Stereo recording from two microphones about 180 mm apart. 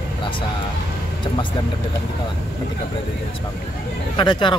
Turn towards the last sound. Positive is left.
turn(degrees=25)  # may be behind; listen again after turning